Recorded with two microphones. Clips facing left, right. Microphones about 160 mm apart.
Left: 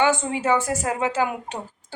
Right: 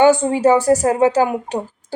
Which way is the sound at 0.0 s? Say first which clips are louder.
Right 9 dB; 35° right (ahead or behind).